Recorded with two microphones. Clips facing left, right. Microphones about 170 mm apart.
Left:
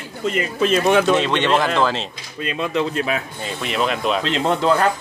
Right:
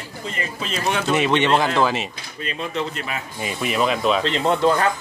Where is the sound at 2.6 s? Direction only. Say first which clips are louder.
Left 6 dB; 90° left.